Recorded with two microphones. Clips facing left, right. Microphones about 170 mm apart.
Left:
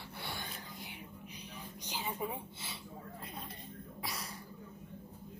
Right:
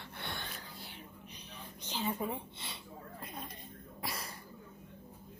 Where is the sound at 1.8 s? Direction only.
15° left (ahead or behind).